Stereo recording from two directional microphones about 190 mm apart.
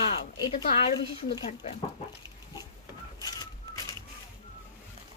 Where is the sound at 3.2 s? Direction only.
20° left (ahead or behind).